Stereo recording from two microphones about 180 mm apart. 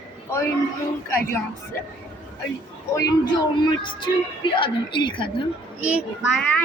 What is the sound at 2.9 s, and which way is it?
A man's voice, 20° left (ahead or behind).